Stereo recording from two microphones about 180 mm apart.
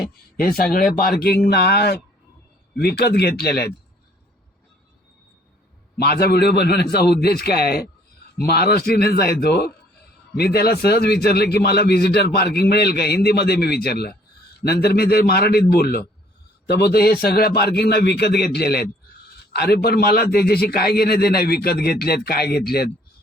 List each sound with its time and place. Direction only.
0.3 s a man's voice: 55° left (ahead or behind)
6.0 s a man's voice: 60° left (ahead or behind)